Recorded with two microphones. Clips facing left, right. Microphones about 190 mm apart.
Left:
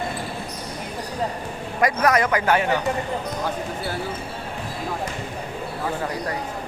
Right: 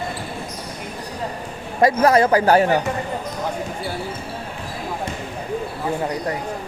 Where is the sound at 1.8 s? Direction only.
30° right (ahead or behind).